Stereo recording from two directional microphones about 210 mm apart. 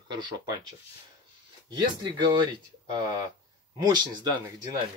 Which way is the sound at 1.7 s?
20° right (ahead or behind).